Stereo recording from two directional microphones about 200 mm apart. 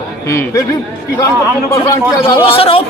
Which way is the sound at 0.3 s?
15° left (ahead or behind).